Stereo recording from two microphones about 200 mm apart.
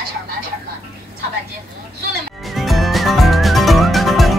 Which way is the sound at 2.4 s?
Centre (ahead or behind).